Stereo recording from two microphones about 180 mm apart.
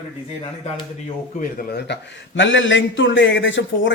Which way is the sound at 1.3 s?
55° left (ahead or behind).